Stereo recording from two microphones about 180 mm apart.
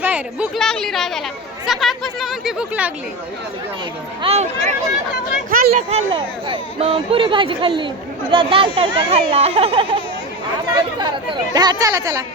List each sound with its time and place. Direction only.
0.0 s speech: 10° right (ahead or behind)
4.2 s speech: 35° right (ahead or behind)
5.5 s speech: 50° right (ahead or behind)
6.1 s speech: 30° right (ahead or behind)
11.5 s speech: 20° right (ahead or behind)